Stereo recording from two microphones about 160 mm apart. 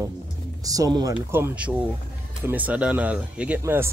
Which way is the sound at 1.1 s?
10° right (ahead or behind).